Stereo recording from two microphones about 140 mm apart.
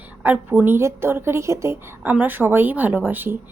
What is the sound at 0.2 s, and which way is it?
A woman's voice, 15° right (ahead or behind).